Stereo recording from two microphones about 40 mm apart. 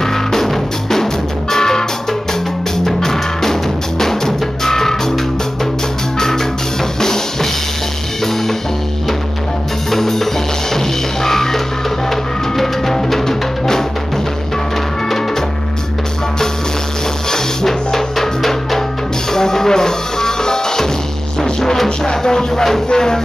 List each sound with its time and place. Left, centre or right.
0.0 s music: centre
4.0 s drum kit: centre
6.1 s music: centre
9.8 s music: centre
17.3 s music: centre